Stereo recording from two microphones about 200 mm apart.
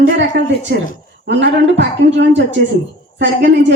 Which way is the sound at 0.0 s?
60° right (ahead or behind).